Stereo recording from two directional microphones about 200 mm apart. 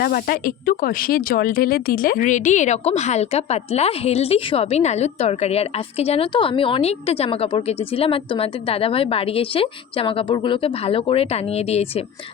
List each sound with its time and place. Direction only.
0.0 s speech: 50° left (ahead or behind); by 12.0 s 30° left (ahead or behind)